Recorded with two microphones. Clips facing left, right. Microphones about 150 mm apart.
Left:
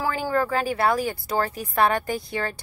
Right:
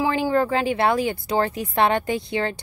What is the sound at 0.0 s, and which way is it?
Speech, 25° right (ahead or behind).